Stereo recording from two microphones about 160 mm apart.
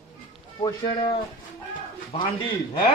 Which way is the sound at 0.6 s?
30° left (ahead or behind).